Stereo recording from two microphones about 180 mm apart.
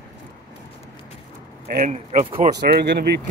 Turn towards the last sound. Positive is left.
turn(degrees=-65)  # may be behind; listen again after turning